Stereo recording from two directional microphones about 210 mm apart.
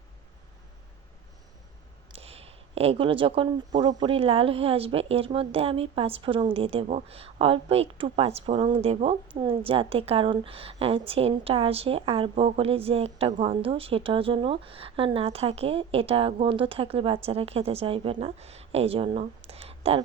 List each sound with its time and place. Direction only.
2.1 s a woman's voice: 30° right (ahead or behind)